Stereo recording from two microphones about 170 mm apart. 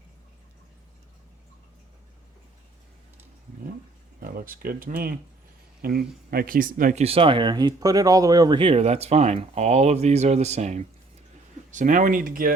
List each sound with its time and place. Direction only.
4.2 s speech: 60° right (ahead or behind)
7.0 s speech: 35° right (ahead or behind); by 12.5 s 55° right (ahead or behind)